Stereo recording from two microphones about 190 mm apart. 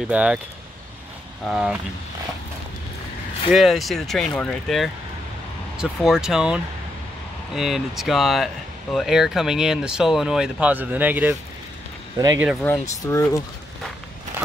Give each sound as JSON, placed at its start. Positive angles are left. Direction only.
{"t": 0.1, "sound": "speech", "side_deg": -5}
{"t": 1.5, "sound": "speech", "side_deg": 0}
{"t": 3.4, "sound": "speech", "side_deg": 0}
{"t": 12.6, "sound": "speech", "side_deg": 15}